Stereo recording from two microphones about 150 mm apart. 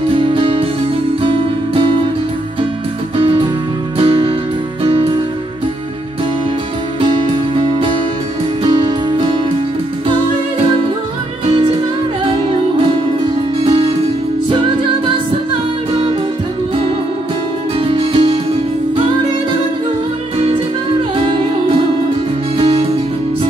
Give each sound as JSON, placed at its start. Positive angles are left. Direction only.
{"t": 0.0, "sound": "music", "side_deg": -35}
{"t": 3.2, "sound": "music", "side_deg": -35}
{"t": 7.0, "sound": "music", "side_deg": -35}
{"t": 12.3, "sound": "music", "side_deg": -35}
{"t": 17.7, "sound": "music", "side_deg": -35}
{"t": 21.2, "sound": "music", "side_deg": -35}